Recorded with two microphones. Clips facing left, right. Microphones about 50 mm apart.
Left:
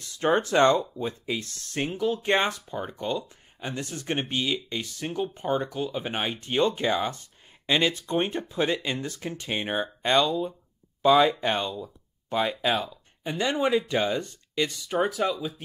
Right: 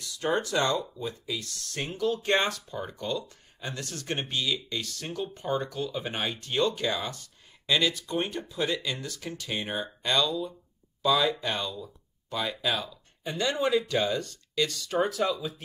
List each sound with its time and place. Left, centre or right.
0.0 s speech: left